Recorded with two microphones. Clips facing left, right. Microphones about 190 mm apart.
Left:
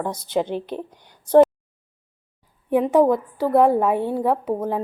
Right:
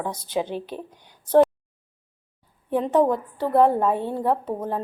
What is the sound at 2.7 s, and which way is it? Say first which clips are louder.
A woman's voice: left 3 dB; 10° left (ahead or behind).